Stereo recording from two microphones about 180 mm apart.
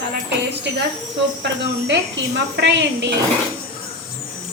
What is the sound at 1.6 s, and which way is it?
Speech, 70° right (ahead or behind).